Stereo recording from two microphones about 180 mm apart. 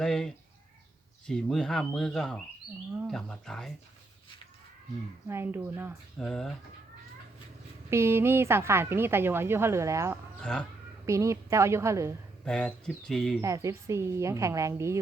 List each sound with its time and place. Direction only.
0.0 s speech: 5° left (ahead or behind)
5.3 s a woman's voice: 10° right (ahead or behind)
6.1 s speech: 5° left (ahead or behind)
7.9 s a woman's voice: 15° right (ahead or behind)
12.5 s speech: 5° left (ahead or behind)
13.4 s a woman's voice: 15° right (ahead or behind)